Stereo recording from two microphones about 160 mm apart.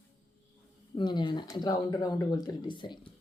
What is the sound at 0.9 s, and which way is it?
Speech, 30° left (ahead or behind).